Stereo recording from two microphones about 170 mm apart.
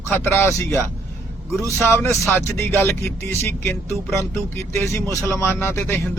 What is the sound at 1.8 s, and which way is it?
Speech, 15° left (ahead or behind).